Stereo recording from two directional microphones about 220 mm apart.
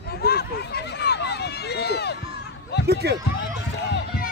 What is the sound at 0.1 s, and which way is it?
Run, 45° left (ahead or behind).